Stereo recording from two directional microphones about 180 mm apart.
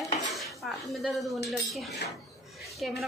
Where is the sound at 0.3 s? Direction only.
Centre (ahead or behind).